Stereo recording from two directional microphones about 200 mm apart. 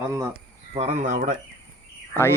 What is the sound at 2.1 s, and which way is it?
Speech, 10° left (ahead or behind).